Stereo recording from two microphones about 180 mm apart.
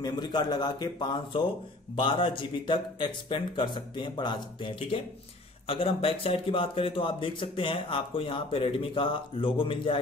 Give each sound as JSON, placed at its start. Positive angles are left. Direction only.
{"t": 0.0, "sound": "speech", "side_deg": 25}